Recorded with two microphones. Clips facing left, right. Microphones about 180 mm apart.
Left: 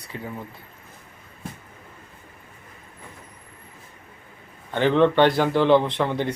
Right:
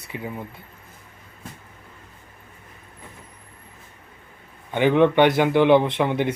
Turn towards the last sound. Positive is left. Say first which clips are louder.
# right 2 dB
turn(degrees=-15)  # may be behind; listen again after turning